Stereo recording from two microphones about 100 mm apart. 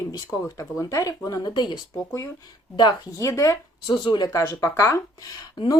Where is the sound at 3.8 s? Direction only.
50° left (ahead or behind).